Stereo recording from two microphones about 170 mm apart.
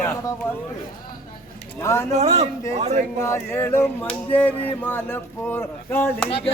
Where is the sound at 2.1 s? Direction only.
40° right (ahead or behind).